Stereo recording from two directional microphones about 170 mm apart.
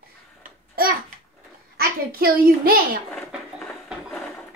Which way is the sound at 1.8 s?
60° right (ahead or behind).